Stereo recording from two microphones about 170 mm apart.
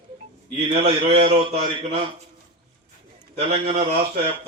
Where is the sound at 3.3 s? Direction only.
35° right (ahead or behind).